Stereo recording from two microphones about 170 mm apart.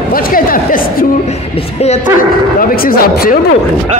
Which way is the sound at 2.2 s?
55° left (ahead or behind).